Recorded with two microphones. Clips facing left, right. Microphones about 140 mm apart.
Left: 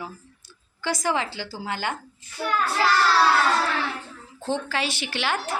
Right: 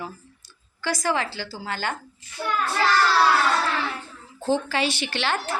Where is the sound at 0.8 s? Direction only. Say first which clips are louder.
Even; 20° left (ahead or behind).